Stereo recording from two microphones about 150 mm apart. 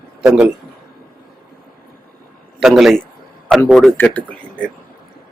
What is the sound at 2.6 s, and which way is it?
Speech, centre (ahead or behind).